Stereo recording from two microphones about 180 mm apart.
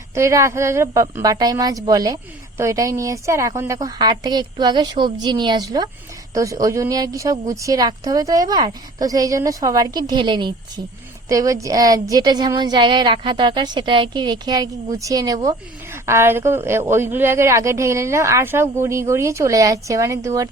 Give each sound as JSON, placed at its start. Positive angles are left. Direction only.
{"t": 0.1, "sound": "a woman's voice", "side_deg": -15}